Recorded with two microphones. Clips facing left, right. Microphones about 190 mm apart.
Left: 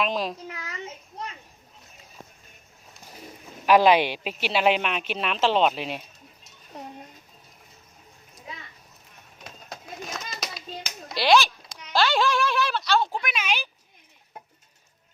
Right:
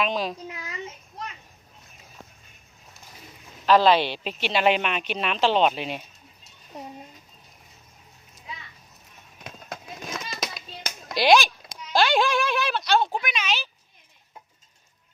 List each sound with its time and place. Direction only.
0.0 s a woman's voice: centre (ahead or behind)
0.4 s a sound: 20° right (ahead or behind)
3.7 s a woman's voice: 15° left (ahead or behind)
9.4 s hands: 55° right (ahead or behind)
11.1 s a child's voice: 15° right (ahead or behind)
13.2 s speech: 10° left (ahead or behind)